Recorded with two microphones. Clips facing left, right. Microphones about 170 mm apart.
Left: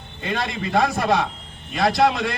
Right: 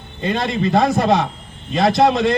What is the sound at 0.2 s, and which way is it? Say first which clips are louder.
A man's voice: right 6 dB; 25° right (ahead or behind).